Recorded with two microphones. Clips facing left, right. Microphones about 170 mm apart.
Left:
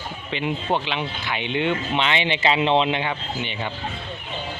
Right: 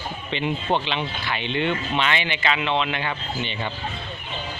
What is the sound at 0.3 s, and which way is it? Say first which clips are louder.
Speech: even; 5° left (ahead or behind).